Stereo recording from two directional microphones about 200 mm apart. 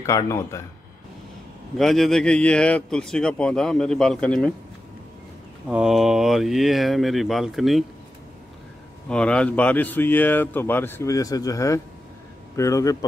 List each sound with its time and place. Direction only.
0.0 s speech: 15° left (ahead or behind)
1.8 s a man's voice: centre (ahead or behind)
5.7 s a man's voice: 5° right (ahead or behind)
9.1 s speech: 5° left (ahead or behind)